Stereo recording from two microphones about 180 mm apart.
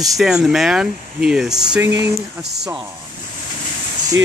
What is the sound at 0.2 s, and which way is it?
Speech, 5° right (ahead or behind).